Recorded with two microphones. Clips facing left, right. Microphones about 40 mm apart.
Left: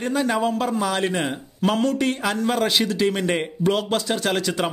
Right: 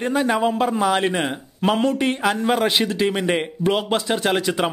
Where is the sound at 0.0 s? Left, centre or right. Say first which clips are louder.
Right 2 dB; centre.